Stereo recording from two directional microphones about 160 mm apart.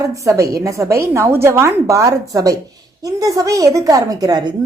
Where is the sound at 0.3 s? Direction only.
20° right (ahead or behind).